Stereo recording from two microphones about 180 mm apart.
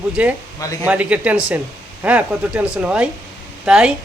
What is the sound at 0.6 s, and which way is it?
Speech, 20° left (ahead or behind).